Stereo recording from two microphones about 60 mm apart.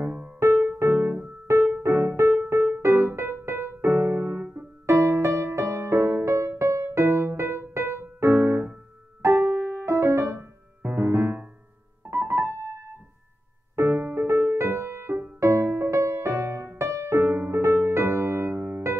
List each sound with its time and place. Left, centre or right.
0.7 s music: right
2.8 s music: right
4.3 s music: right
4.8 s music: right
9.8 s music: right
10.8 s music: right
11.1 s music: right
12.1 s piano: right
13.7 s music: right